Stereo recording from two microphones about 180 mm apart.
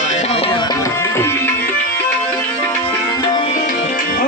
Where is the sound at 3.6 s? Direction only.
55° left (ahead or behind).